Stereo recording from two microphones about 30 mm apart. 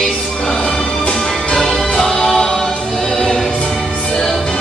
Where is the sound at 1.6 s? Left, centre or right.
Centre.